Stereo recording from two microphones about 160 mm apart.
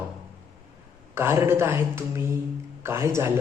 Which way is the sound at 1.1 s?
15° right (ahead or behind).